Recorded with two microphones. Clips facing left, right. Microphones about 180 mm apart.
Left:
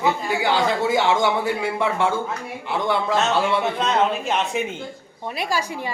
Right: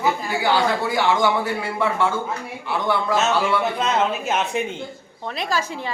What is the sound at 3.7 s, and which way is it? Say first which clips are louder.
Speech: left 1 dB; centre (ahead or behind).